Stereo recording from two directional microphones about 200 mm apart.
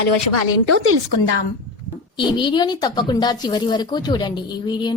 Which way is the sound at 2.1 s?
25° left (ahead or behind).